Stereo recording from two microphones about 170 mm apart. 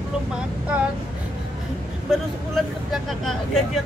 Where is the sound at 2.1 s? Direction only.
Centre (ahead or behind).